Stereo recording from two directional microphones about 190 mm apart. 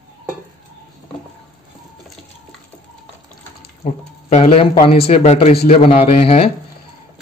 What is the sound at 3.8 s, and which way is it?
A man's voice, 35° left (ahead or behind).